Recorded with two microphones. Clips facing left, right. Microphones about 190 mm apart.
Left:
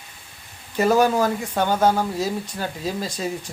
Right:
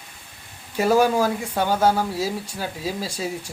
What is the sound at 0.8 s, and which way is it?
Speech, 10° right (ahead or behind).